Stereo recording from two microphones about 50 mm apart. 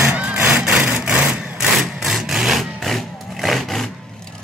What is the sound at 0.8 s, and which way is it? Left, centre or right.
Vehicle, right.